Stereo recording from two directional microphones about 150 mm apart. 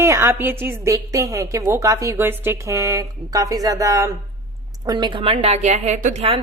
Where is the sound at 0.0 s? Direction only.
20° right (ahead or behind); by 6.2 s 55° right (ahead or behind).